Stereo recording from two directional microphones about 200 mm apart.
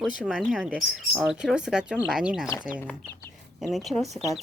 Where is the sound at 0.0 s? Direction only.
Centre (ahead or behind).